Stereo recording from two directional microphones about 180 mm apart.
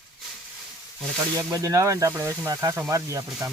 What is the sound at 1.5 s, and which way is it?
Speech, 20° right (ahead or behind).